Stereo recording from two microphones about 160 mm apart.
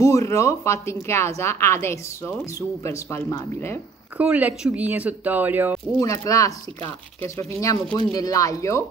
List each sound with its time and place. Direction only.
0.0 s speech: 20° left (ahead or behind)
4.2 s speech: 10° right (ahead or behind)
5.9 s speech: 20° left (ahead or behind)